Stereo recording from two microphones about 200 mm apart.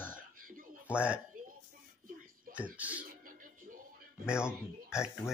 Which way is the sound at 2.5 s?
45° right (ahead or behind).